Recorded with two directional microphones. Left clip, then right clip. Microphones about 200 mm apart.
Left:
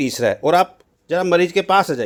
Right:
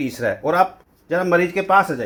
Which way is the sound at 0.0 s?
45° left (ahead or behind).